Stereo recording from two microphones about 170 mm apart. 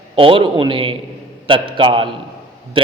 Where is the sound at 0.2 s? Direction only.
30° right (ahead or behind).